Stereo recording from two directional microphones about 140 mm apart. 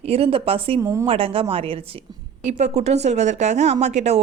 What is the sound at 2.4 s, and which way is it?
Speech, 55° right (ahead or behind).